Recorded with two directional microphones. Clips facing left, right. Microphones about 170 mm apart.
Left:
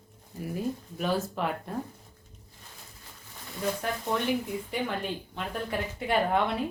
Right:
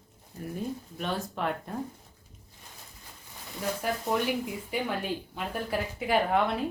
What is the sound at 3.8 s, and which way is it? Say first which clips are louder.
A woman's voice: right 1 dB; 5° right (ahead or behind).